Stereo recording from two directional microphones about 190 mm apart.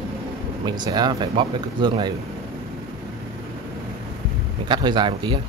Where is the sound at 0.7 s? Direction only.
20° right (ahead or behind).